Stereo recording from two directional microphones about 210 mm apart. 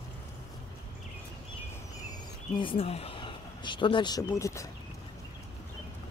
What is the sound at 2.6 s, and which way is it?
Speech, 25° left (ahead or behind).